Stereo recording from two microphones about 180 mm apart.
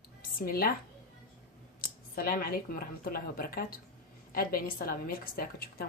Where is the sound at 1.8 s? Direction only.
55° left (ahead or behind).